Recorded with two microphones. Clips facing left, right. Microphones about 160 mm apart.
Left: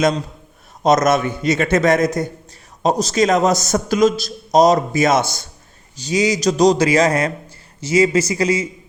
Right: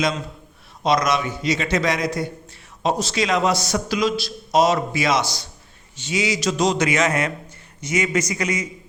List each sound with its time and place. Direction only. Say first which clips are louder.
0.8 s a man's voice: left 5 dB; 45° left (ahead or behind)
6.0 s a man's voice: left 5 dB; 40° left (ahead or behind)